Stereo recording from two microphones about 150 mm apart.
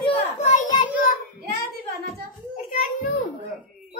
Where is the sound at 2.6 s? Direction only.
65° left (ahead or behind).